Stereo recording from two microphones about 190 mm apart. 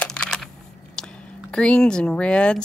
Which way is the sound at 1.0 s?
5° left (ahead or behind).